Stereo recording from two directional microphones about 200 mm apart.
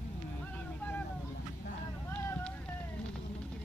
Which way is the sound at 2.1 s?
10° left (ahead or behind).